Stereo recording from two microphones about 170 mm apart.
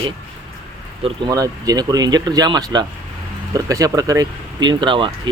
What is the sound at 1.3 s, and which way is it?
Speech, 20° right (ahead or behind).